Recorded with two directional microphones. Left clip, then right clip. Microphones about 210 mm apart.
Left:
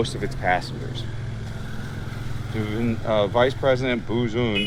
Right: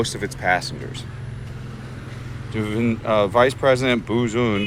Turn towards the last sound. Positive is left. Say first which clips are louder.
# right 3 dB
turn(degrees=-30)  # may be behind; listen again after turning